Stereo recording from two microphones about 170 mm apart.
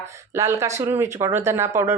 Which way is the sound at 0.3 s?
15° right (ahead or behind).